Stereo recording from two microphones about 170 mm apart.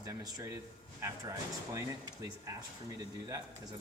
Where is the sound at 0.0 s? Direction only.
20° right (ahead or behind).